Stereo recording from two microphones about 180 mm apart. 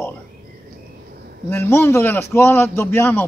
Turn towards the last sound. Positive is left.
turn(degrees=10)  # may be behind; listen again after turning